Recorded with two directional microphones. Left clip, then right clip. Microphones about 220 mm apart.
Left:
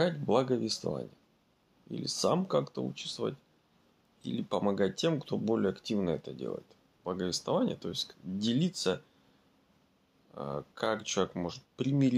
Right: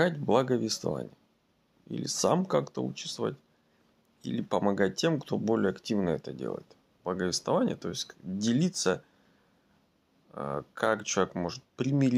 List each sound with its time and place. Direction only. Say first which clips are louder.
0.0 s speech: right 3 dB; 30° right (ahead or behind)
10.3 s speech: right 4 dB; 25° right (ahead or behind)